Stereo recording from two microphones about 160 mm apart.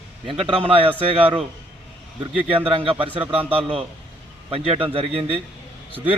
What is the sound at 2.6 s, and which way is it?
A man's voice, 35° right (ahead or behind).